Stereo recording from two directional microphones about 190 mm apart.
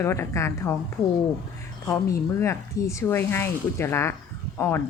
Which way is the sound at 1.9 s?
15° left (ahead or behind).